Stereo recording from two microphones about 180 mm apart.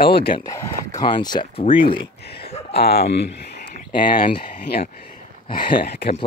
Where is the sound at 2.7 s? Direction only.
65° left (ahead or behind).